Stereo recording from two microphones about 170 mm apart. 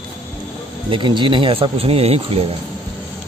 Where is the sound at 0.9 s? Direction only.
30° right (ahead or behind).